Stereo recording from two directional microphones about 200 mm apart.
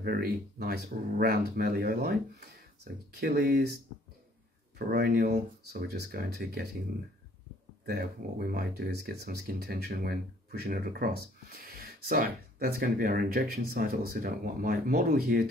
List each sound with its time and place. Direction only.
0.0 s speech: 50° right (ahead or behind)
7.8 s speech: 50° right (ahead or behind)